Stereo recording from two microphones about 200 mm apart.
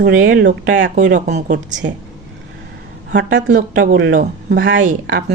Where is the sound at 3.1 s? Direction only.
60° right (ahead or behind).